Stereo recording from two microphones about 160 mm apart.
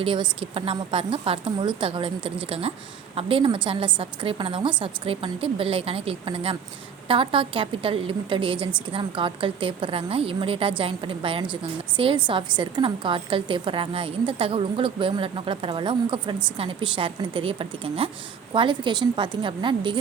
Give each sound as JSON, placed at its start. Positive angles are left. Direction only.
{"t": 0.0, "sound": "a woman's voice", "side_deg": -35}